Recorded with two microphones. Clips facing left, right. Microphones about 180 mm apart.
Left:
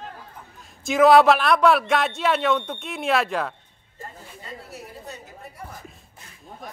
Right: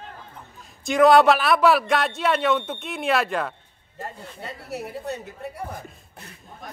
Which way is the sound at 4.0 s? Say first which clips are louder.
Right 5 dB; 70° right (ahead or behind).